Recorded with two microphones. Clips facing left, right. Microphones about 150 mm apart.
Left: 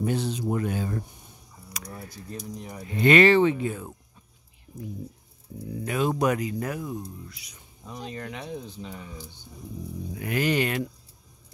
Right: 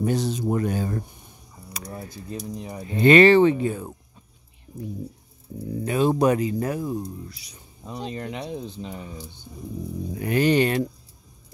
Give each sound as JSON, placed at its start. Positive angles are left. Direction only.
{"t": 0.0, "sound": "speech", "side_deg": -40}
{"t": 1.7, "sound": "speech", "side_deg": -30}
{"t": 5.7, "sound": "speech", "side_deg": -30}